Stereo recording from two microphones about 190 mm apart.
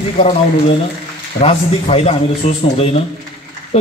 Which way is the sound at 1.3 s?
30° left (ahead or behind).